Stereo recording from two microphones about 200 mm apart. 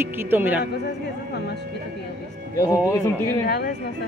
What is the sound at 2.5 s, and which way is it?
Speech, 15° left (ahead or behind).